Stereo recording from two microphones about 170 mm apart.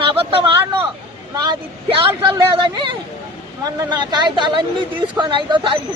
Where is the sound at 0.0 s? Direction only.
30° right (ahead or behind).